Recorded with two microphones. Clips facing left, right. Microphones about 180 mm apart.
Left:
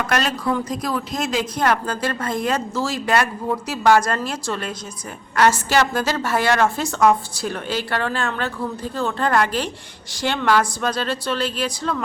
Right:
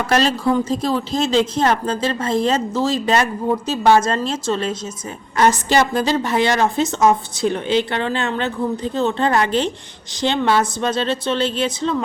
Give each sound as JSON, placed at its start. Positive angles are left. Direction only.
{"t": 0.1, "sound": "speech", "side_deg": -30}
{"t": 5.7, "sound": "speech", "side_deg": -15}